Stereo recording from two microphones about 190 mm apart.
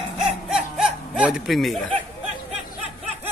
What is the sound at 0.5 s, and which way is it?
Snicker, 5° right (ahead or behind).